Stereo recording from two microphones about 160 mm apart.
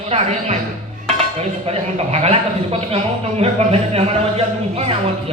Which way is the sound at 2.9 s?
40° right (ahead or behind).